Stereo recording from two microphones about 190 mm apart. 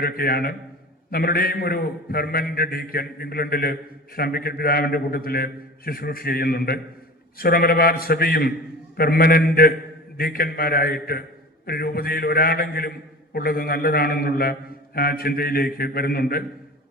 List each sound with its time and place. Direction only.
0.0 s a man's voice: 55° left (ahead or behind)